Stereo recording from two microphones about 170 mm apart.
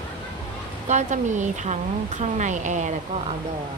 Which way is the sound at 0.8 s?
45° right (ahead or behind).